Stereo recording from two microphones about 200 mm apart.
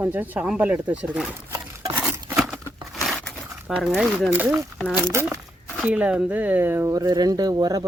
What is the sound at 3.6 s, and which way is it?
Speech, 5° right (ahead or behind).